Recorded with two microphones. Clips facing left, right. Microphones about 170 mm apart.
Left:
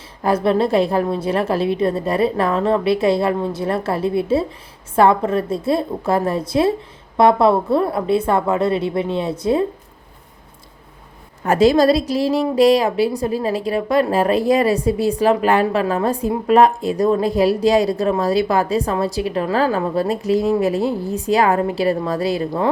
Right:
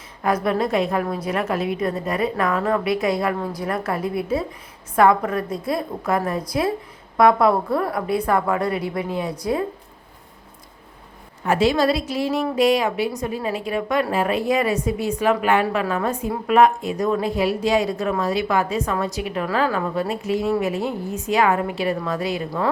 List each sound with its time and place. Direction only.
0.2 s a woman's voice: 30° left (ahead or behind)
11.4 s speech: 40° left (ahead or behind)